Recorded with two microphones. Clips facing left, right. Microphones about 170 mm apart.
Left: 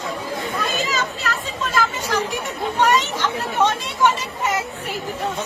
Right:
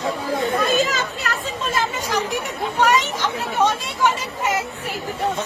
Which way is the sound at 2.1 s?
15° right (ahead or behind).